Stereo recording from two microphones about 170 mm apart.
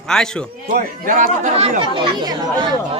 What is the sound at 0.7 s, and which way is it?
Speech, 55° right (ahead or behind).